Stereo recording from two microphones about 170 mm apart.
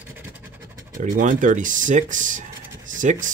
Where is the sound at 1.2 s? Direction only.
50° right (ahead or behind).